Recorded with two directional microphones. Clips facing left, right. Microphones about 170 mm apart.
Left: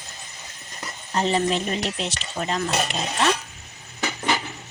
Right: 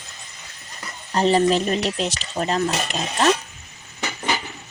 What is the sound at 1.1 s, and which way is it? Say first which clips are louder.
Speech: right 5 dB; 35° right (ahead or behind).